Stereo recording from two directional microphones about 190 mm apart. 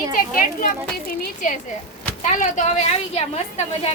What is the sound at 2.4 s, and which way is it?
A woman's voice, 40° left (ahead or behind).